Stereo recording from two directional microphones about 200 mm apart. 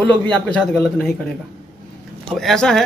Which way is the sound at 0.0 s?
25° right (ahead or behind).